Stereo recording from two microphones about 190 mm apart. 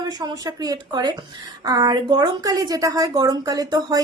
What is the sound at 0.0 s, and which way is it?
A woman's voice, 20° right (ahead or behind).